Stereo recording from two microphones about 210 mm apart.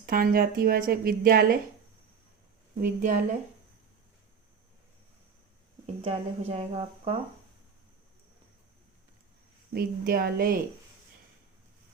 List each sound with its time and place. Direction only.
0.0 s a woman's voice: 45° right (ahead or behind)
2.8 s a woman's voice: 35° right (ahead or behind)
5.8 s speech: 30° right (ahead or behind)
9.7 s a woman's voice: 45° right (ahead or behind)